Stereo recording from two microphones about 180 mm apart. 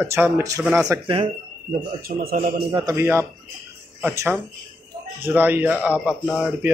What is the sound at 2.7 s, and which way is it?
Speech, 20° right (ahead or behind).